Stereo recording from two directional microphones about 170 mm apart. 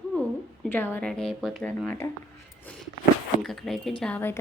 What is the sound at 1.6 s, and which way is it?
Speech, 10° left (ahead or behind).